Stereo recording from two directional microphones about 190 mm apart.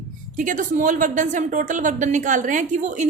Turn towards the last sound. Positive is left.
turn(degrees=-40)  # may be behind; listen again after turning